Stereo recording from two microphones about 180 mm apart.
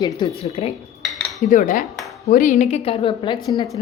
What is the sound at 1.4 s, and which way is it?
A woman's voice, 40° left (ahead or behind).